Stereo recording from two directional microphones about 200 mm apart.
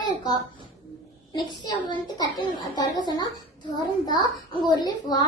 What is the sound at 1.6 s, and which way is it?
A woman's voice, 20° left (ahead or behind).